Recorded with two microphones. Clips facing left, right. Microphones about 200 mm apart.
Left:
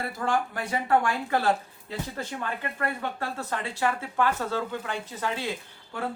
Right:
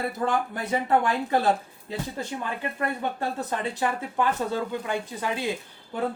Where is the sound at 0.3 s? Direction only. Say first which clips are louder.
Left 2 dB; 20° right (ahead or behind).